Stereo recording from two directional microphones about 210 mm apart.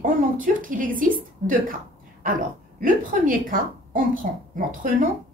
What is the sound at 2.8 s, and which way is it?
A woman's voice, 40° right (ahead or behind).